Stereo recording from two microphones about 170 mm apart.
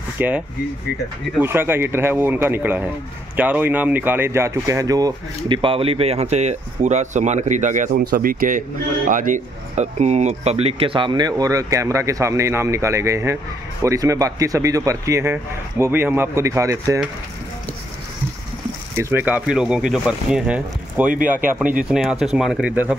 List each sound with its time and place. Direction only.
0.2 s a man's voice: 10° right (ahead or behind)
1.4 s a man's voice: 15° right (ahead or behind)
18.9 s speech: 15° right (ahead or behind)